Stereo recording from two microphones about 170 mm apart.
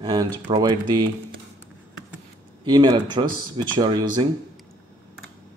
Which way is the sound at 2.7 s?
25° right (ahead or behind).